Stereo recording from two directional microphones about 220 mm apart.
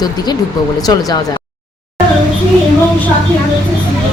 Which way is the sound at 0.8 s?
15° left (ahead or behind).